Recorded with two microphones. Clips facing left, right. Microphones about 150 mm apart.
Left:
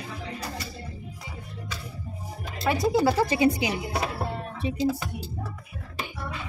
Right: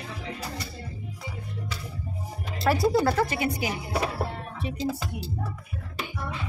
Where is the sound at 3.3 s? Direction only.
20° left (ahead or behind).